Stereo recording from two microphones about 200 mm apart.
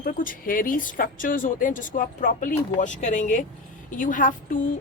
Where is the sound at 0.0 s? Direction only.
45° left (ahead or behind).